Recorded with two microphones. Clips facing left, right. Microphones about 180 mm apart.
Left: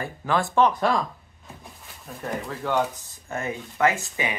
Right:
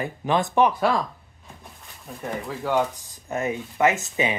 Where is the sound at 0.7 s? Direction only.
5° right (ahead or behind).